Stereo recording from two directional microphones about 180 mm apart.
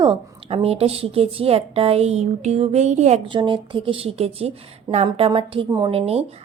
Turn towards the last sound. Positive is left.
turn(degrees=-35)  # may be behind; listen again after turning